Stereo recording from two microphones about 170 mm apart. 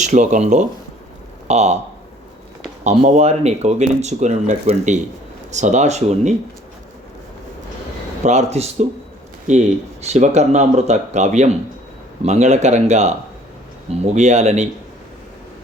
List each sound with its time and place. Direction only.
0.0 s speech: 45° right (ahead or behind)
2.8 s speech: 40° right (ahead or behind)
8.2 s speech: 40° right (ahead or behind)